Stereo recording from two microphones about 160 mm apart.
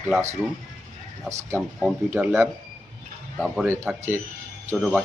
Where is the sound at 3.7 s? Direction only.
15° right (ahead or behind).